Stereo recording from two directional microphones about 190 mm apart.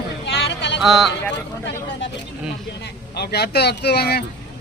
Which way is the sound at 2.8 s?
60° left (ahead or behind).